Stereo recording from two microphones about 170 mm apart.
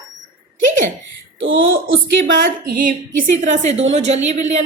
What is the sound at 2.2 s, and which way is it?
A woman's voice, 60° right (ahead or behind).